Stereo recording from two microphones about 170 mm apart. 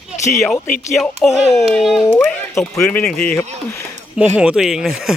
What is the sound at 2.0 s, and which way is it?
Speech, 10° left (ahead or behind).